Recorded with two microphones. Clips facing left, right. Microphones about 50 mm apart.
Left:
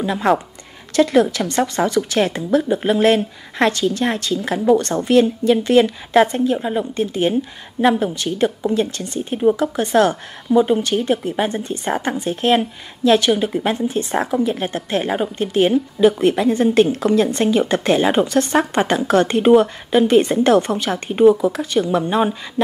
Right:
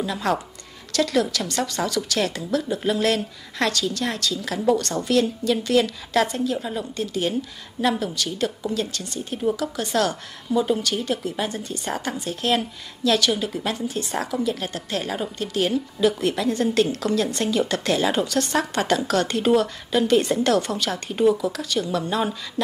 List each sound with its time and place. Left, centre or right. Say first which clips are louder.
0.0 s speech: left 7 dB; left